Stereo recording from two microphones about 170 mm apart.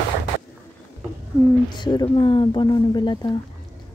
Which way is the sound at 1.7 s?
25° left (ahead or behind).